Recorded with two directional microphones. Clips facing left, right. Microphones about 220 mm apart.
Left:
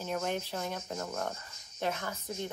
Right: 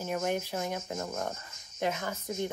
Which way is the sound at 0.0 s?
10° right (ahead or behind).